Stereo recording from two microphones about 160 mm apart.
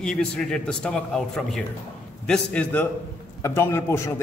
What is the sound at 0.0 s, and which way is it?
A man's voice, 5° left (ahead or behind).